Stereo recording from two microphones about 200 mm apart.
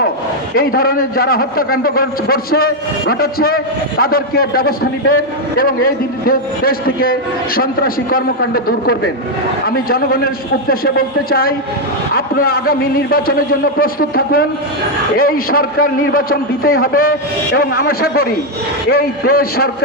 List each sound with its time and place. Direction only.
0.5 s a man's voice: 50° left (ahead or behind)